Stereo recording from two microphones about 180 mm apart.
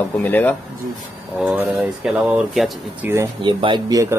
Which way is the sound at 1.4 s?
10° right (ahead or behind).